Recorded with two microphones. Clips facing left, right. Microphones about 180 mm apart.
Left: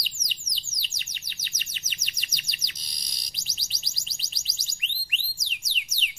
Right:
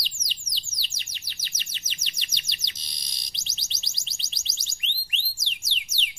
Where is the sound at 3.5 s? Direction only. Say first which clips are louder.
Right 1 dB; 25° right (ahead or behind).